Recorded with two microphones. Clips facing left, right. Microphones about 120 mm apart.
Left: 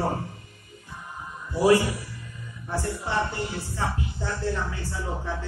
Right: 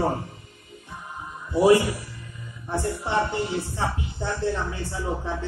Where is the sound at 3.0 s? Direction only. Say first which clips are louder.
Right 4 dB; 20° right (ahead or behind).